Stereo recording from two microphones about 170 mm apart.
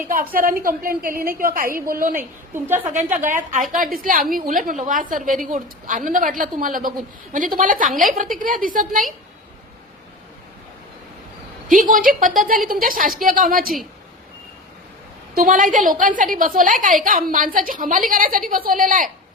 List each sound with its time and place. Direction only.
0.3 s a woman's voice: 55° right (ahead or behind)
2.6 s a woman's voice: 10° right (ahead or behind)
2.9 s a woman's voice: 50° right (ahead or behind)
11.7 s a woman's voice: 50° right (ahead or behind)
15.4 s a woman's voice: 50° right (ahead or behind)